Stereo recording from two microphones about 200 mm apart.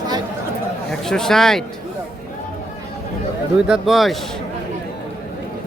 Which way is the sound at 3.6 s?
5° right (ahead or behind).